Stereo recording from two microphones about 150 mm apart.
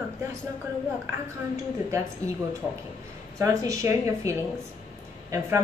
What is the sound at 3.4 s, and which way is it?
A woman's voice, 20° right (ahead or behind).